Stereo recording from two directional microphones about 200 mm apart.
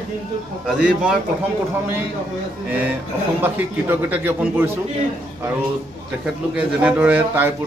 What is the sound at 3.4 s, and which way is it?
A man's voice, 10° right (ahead or behind).